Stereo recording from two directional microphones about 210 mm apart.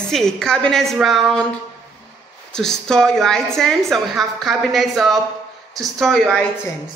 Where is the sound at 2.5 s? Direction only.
5° left (ahead or behind).